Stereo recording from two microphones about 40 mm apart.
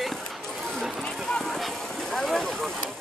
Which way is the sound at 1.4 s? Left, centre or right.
Centre.